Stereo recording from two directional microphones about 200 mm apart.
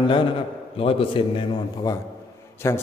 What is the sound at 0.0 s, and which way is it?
A man's voice, 25° left (ahead or behind).